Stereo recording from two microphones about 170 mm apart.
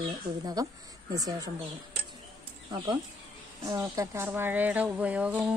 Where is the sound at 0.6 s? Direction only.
20° right (ahead or behind).